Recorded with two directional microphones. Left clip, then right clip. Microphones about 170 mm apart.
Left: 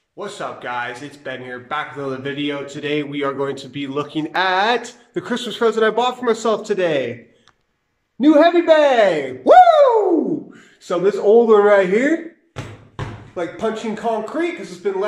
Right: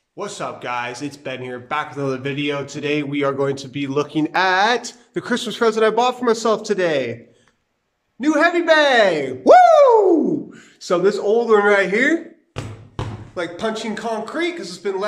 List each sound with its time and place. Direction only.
0.2 s speech: centre (ahead or behind)
8.2 s a man's voice: 25° left (ahead or behind)
8.7 s speech: 10° left (ahead or behind)
11.2 s speech: 20° left (ahead or behind)
13.9 s speech: 15° left (ahead or behind)